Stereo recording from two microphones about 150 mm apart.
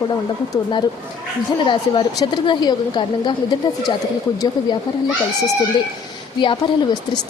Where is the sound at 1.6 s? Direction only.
35° left (ahead or behind).